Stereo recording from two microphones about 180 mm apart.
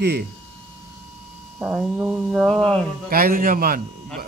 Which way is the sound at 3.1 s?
55° right (ahead or behind).